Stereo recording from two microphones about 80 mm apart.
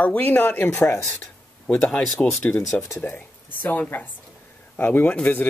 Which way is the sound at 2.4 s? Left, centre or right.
Left.